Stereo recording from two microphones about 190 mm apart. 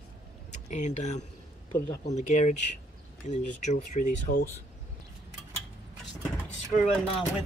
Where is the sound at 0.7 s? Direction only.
40° left (ahead or behind).